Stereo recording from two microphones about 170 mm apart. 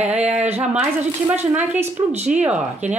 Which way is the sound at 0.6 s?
10° right (ahead or behind).